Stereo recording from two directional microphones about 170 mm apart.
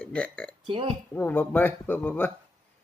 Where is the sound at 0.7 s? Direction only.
30° right (ahead or behind).